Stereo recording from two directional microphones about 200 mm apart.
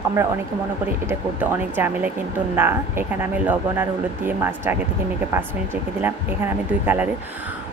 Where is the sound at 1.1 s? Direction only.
10° right (ahead or behind).